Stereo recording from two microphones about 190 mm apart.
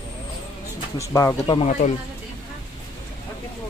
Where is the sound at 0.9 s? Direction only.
15° left (ahead or behind).